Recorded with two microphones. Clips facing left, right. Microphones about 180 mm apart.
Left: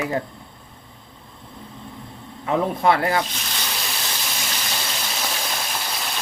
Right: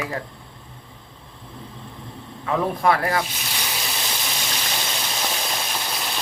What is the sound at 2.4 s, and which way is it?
Speech, 25° left (ahead or behind).